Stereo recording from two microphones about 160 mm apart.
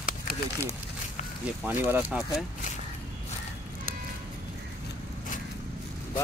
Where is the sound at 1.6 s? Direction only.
10° right (ahead or behind).